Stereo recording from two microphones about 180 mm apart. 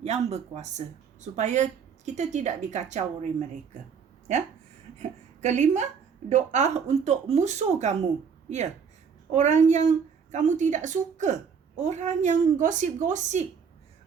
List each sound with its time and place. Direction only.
0.0 s speech: 35° right (ahead or behind)
5.4 s speech: 40° right (ahead or behind)
9.3 s a woman's voice: 40° right (ahead or behind)